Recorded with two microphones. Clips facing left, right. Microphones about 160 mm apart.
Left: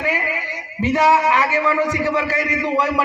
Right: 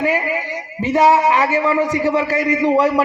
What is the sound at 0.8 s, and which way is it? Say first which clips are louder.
A man's voice: right 2 dB; 30° right (ahead or behind).